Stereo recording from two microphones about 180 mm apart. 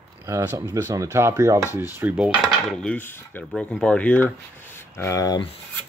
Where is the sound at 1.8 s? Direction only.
10° right (ahead or behind).